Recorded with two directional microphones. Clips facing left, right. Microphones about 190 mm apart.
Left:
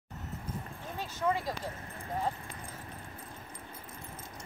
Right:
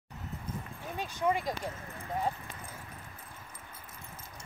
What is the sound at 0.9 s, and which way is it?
Speech, 15° right (ahead or behind).